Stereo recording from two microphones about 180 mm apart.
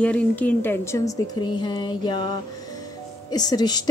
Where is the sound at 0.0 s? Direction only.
10° left (ahead or behind).